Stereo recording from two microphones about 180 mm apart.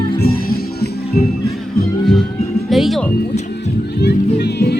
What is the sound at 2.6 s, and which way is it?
Music, centre (ahead or behind).